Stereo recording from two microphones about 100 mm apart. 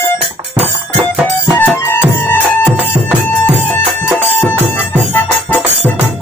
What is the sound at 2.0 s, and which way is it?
Music, 20° left (ahead or behind).